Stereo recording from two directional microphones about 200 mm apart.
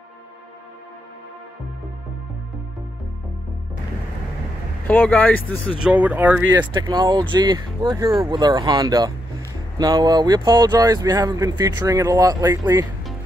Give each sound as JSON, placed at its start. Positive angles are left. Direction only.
{"t": 4.8, "sound": "speech", "side_deg": 10}
{"t": 5.8, "sound": "speech", "side_deg": -5}
{"t": 6.7, "sound": "speech", "side_deg": -20}